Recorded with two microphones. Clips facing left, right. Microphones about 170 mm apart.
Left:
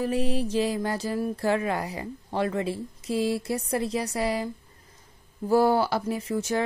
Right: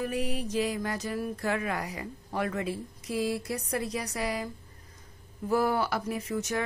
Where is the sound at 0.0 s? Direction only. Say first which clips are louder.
Left 5 dB; 30° left (ahead or behind).